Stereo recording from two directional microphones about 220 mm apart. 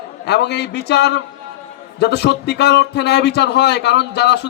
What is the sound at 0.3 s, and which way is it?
A man's voice, 50° left (ahead or behind).